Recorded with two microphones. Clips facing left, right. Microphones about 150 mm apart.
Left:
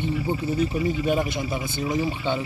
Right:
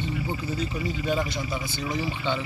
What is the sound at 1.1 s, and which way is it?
Speech, 20° left (ahead or behind).